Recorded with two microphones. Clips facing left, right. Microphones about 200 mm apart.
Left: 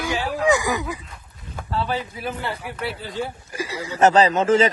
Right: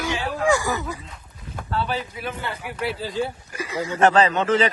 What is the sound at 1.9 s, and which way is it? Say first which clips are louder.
Speech: left 1 dB; 30° left (ahead or behind).